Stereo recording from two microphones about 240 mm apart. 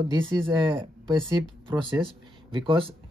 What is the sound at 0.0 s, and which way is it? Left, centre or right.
Speech, centre.